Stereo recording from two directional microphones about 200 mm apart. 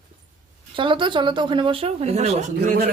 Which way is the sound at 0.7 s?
25° right (ahead or behind).